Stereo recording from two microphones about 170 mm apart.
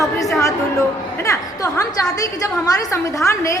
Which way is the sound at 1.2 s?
15° left (ahead or behind).